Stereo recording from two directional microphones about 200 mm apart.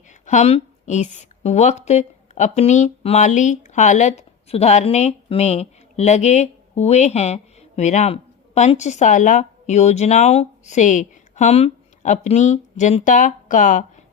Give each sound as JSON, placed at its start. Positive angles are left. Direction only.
{"t": 0.3, "sound": "speech", "side_deg": 35}